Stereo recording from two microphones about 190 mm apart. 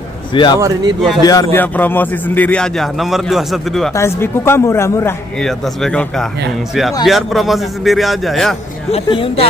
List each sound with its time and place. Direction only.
0.3 s a man's voice: 25° left (ahead or behind)
0.6 s speech: 15° right (ahead or behind)
1.2 s a man's voice: 20° left (ahead or behind); by 3.9 s centre (ahead or behind)
3.9 s a man's voice: 15° left (ahead or behind)
5.4 s a man's voice: 5° left (ahead or behind)
8.9 s speech: 30° left (ahead or behind)